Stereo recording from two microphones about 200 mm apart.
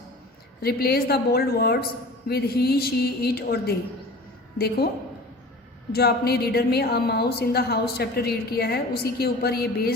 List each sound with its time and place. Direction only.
0.6 s a woman's voice: 50° left (ahead or behind)
5.9 s a woman's voice: 50° left (ahead or behind)